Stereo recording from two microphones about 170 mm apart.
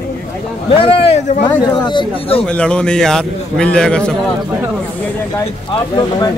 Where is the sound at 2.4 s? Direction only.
5° left (ahead or behind).